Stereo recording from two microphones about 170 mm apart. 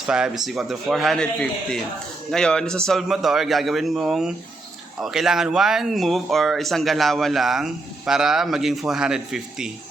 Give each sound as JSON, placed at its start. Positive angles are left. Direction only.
{"t": 0.0, "sound": "speech", "side_deg": -5}